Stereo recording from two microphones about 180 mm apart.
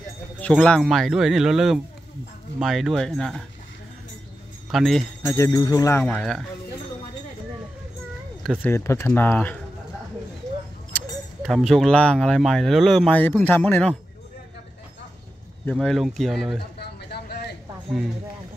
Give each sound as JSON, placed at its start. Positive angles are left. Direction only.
{"t": 0.4, "sound": "speech", "side_deg": 5}
{"t": 4.6, "sound": "speech", "side_deg": 0}
{"t": 5.3, "sound": "speech", "side_deg": 15}
{"t": 6.0, "sound": "speech", "side_deg": 5}
{"t": 8.5, "sound": "speech", "side_deg": 10}
{"t": 11.4, "sound": "speech", "side_deg": 0}
{"t": 15.7, "sound": "speech", "side_deg": 0}
{"t": 16.7, "sound": "a sound", "side_deg": 65}